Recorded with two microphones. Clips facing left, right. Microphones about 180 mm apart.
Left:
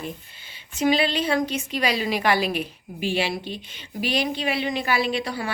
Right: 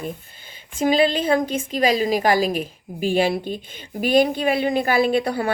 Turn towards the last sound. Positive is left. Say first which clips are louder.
# right 7 dB
turn(degrees=-55)  # may be behind; listen again after turning